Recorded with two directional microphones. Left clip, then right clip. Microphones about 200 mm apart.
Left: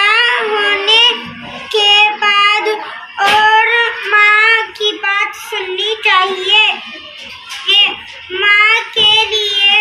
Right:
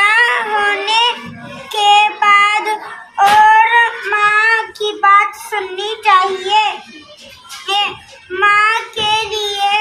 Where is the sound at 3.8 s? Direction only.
25° right (ahead or behind).